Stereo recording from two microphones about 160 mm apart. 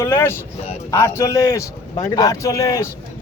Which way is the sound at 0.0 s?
15° left (ahead or behind).